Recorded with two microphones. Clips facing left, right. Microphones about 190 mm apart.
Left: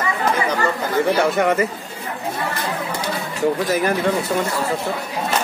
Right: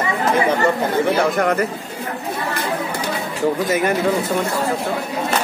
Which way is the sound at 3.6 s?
Centre (ahead or behind).